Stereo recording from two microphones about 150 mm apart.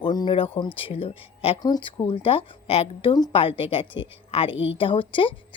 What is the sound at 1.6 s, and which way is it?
A woman's voice, 30° left (ahead or behind).